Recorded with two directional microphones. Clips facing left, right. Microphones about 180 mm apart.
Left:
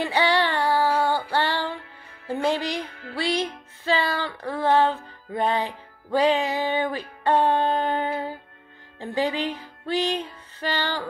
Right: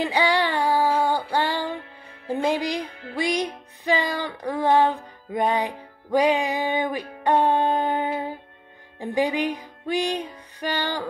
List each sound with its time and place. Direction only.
0.0 s female singing: 15° right (ahead or behind)
2.2 s music: 15° right (ahead or behind)